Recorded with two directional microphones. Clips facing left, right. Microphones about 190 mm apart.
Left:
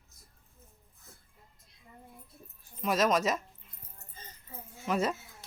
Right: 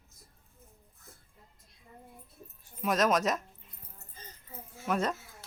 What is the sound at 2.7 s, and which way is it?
Speech, centre (ahead or behind).